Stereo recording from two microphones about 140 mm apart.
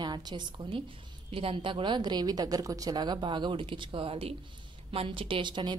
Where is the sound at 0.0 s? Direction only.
30° right (ahead or behind).